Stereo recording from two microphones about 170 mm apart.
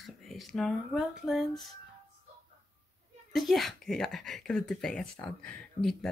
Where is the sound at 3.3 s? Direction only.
Centre (ahead or behind).